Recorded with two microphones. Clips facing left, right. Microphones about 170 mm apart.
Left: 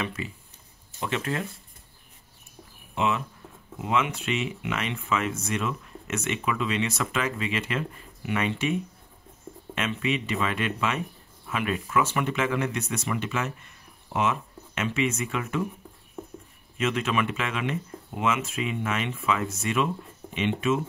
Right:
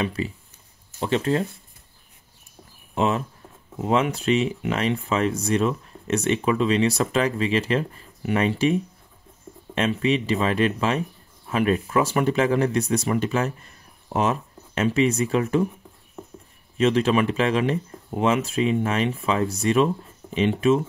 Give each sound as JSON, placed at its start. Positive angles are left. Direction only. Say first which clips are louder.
{"t": 0.0, "sound": "speech", "louder": "right 6 dB", "side_deg": -35}
{"t": 2.9, "sound": "speech", "louder": "right 4 dB", "side_deg": -40}
{"t": 16.7, "sound": "speech", "louder": "right 7 dB", "side_deg": -35}